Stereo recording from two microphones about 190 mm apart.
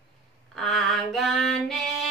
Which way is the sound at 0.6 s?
Centre (ahead or behind).